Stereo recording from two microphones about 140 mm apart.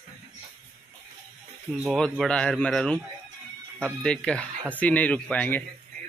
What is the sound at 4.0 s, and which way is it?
Speech, 5° left (ahead or behind).